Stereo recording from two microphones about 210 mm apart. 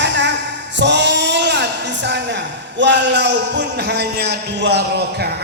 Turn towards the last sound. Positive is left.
turn(degrees=-50)  # may be behind; listen again after turning